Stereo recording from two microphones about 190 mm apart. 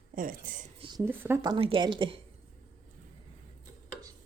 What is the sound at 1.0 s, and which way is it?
Speech, 10° right (ahead or behind).